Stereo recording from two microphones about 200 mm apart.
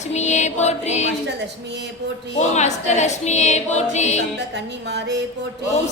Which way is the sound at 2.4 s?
35° left (ahead or behind).